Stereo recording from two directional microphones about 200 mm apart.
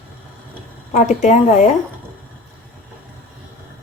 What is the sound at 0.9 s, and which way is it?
Speech, 35° left (ahead or behind).